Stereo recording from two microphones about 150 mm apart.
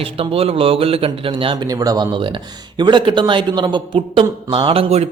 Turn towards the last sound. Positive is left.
turn(degrees=-40)  # may be behind; listen again after turning